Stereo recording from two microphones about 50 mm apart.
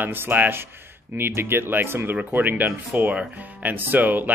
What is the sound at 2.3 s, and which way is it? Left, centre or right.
Speech, right.